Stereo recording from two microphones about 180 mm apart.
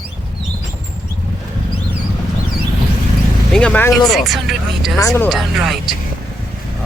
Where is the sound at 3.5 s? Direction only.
5° left (ahead or behind).